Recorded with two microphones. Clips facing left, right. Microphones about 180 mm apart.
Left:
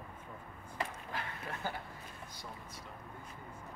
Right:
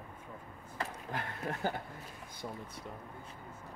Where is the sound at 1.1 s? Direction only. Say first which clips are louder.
Right 4 dB; 50° right (ahead or behind).